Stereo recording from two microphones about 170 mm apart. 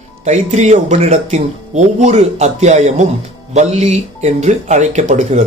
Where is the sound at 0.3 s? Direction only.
45° right (ahead or behind).